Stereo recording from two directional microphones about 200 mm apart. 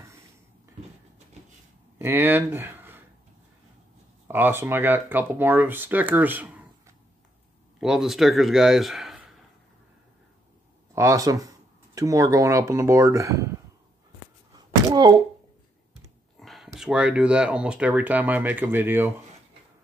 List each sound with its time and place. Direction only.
2.0 s speech: 10° right (ahead or behind)
4.3 s speech: 10° right (ahead or behind)
11.0 s speech: 15° right (ahead or behind)
14.5 s thunk: 20° right (ahead or behind)
16.3 s speech: centre (ahead or behind)